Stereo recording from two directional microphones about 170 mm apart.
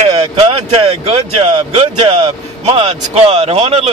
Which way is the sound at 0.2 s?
35° right (ahead or behind).